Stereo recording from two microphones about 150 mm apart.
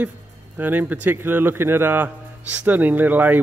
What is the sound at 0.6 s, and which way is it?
A man's voice, 10° right (ahead or behind).